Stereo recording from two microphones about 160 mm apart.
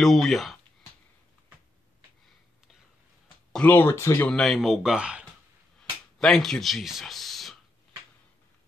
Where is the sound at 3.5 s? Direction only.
10° left (ahead or behind).